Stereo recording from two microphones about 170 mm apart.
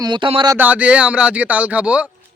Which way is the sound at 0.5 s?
10° right (ahead or behind).